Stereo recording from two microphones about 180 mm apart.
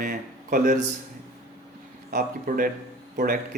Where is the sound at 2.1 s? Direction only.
55° right (ahead or behind).